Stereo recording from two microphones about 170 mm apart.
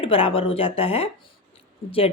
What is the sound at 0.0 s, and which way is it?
Speech, 35° left (ahead or behind).